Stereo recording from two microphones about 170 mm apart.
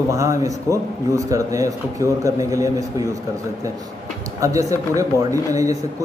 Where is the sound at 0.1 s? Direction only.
20° right (ahead or behind).